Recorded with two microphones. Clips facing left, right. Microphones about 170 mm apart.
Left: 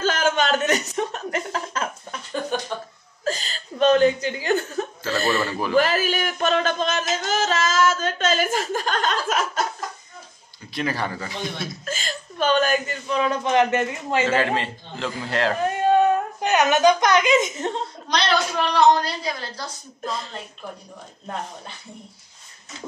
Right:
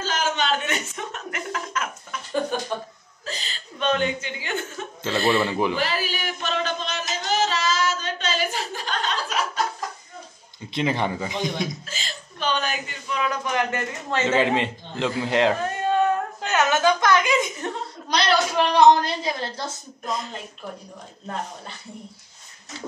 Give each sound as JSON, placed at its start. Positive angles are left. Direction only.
{"t": 0.0, "sound": "chuckle", "side_deg": 55}
{"t": 3.3, "sound": "chuckle", "side_deg": 45}
{"t": 5.0, "sound": "speech", "side_deg": -20}
{"t": 5.8, "sound": "a sound", "side_deg": 45}
{"t": 10.7, "sound": "a man's voice", "side_deg": -20}
{"t": 11.8, "sound": "hiccup", "side_deg": 50}
{"t": 14.2, "sound": "a man's voice", "side_deg": -20}
{"t": 15.6, "sound": "whimper", "side_deg": 15}
{"t": 18.7, "sound": "a sound", "side_deg": -20}